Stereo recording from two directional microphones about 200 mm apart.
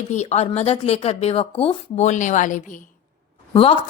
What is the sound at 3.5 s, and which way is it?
Speech, 25° left (ahead or behind).